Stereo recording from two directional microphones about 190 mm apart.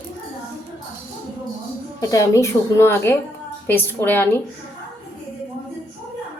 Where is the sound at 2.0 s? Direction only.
15° left (ahead or behind).